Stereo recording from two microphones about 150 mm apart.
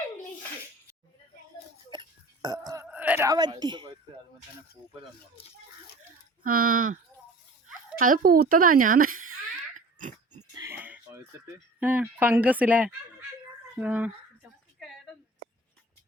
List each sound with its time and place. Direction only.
1.9 s burping: 30° right (ahead or behind)
2.9 s a sound: 10° right (ahead or behind)
3.2 s speech: 30° right (ahead or behind)
6.4 s a woman's voice: 65° right (ahead or behind)
9.7 s pig: 55° right (ahead or behind)
10.5 s a sound: 20° right (ahead or behind)
11.8 s speech: 10° right (ahead or behind)